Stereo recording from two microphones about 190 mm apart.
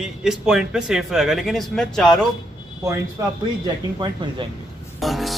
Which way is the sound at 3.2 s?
15° right (ahead or behind).